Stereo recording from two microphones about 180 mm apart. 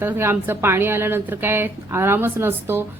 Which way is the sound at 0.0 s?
15° right (ahead or behind).